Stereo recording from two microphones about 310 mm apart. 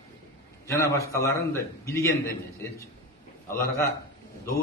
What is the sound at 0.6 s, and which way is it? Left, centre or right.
A man's voice, centre.